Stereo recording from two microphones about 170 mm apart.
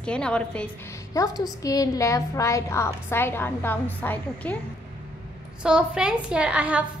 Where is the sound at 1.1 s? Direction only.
20° left (ahead or behind).